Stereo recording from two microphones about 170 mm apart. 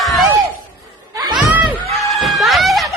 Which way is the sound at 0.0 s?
Centre (ahead or behind).